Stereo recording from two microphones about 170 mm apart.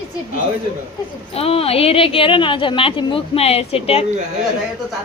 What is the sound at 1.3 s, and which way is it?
A woman's voice, 35° left (ahead or behind).